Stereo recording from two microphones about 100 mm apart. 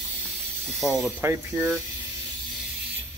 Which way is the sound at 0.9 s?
25° right (ahead or behind).